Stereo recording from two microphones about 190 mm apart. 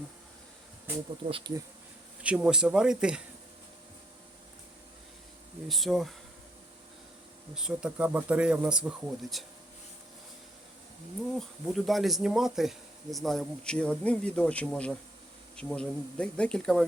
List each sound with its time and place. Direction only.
1.3 s speech: 25° right (ahead or behind)
2.2 s speech: 5° right (ahead or behind)
5.6 s speech: centre (ahead or behind)
7.5 s speech: 5° right (ahead or behind)
11.3 s speech: centre (ahead or behind)